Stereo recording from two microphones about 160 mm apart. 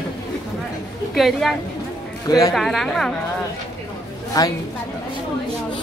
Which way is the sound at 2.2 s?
20° left (ahead or behind).